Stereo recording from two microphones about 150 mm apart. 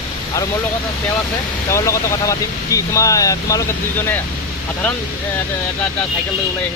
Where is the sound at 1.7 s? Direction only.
20° left (ahead or behind).